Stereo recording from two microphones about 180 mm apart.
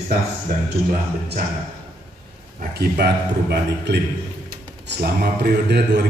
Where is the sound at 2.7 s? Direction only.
65° right (ahead or behind).